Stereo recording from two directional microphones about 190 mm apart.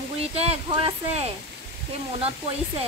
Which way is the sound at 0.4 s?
30° right (ahead or behind).